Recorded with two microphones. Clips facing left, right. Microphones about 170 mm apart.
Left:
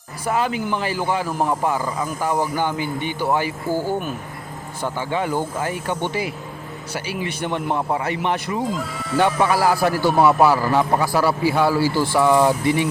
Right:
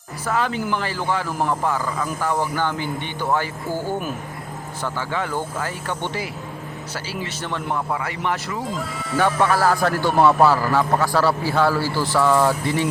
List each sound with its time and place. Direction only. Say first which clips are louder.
0.3 s speech: left 1 dB; 15° left (ahead or behind)
4.8 s a man's voice: left 3 dB; 15° left (ahead or behind)
8.6 s speech: left 3 dB; centre (ahead or behind)
9.4 s speech: left 1 dB; 10° left (ahead or behind)